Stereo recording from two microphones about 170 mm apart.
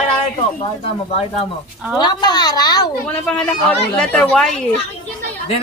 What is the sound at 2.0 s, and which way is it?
Speech, 25° left (ahead or behind).